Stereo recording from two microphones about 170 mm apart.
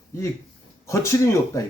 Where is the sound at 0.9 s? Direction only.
15° left (ahead or behind).